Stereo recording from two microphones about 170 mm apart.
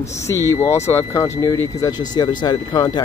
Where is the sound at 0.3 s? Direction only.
15° left (ahead or behind).